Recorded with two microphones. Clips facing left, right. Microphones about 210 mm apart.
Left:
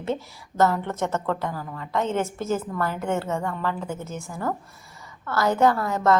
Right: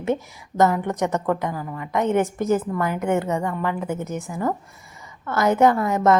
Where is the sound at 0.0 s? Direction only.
15° right (ahead or behind).